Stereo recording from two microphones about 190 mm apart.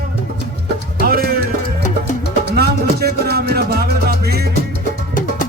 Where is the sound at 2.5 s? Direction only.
55° right (ahead or behind).